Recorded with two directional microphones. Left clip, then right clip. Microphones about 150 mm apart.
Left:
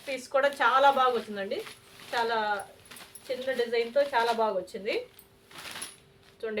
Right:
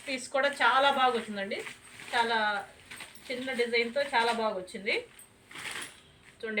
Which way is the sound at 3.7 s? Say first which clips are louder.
Left 2 dB; 55° left (ahead or behind).